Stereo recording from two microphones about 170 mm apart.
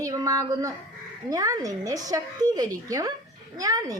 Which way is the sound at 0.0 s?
20° right (ahead or behind).